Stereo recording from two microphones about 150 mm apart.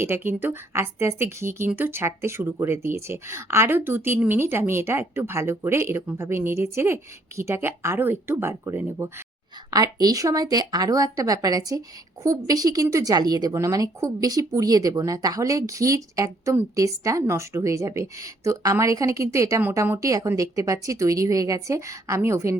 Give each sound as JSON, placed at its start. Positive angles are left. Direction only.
{"t": 0.0, "sound": "a woman's voice", "side_deg": -15}